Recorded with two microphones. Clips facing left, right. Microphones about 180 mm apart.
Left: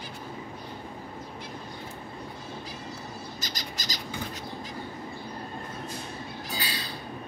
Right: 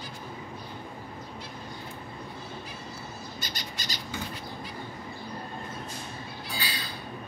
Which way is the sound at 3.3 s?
40° left (ahead or behind).